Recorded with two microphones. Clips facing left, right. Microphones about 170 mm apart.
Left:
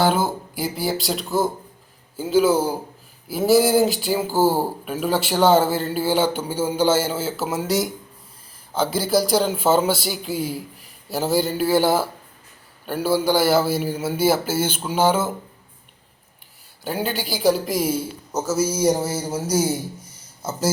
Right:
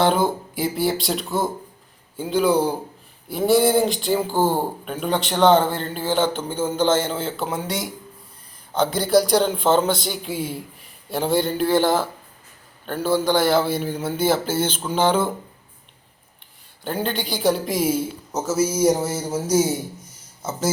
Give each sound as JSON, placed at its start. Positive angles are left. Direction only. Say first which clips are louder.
{"t": 0.0, "sound": "a man's voice", "louder": "right 1 dB", "side_deg": 5}
{"t": 16.8, "sound": "a man's voice", "louder": "even", "side_deg": 5}